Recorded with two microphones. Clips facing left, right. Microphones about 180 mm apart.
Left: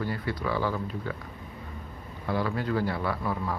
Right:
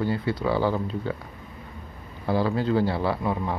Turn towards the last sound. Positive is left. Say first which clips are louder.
# right 4 dB
turn(degrees=-25)  # may be behind; listen again after turning